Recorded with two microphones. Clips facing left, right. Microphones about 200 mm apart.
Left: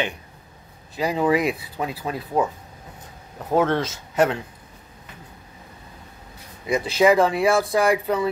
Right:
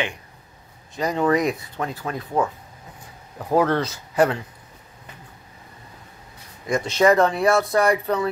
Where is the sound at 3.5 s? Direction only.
Centre (ahead or behind).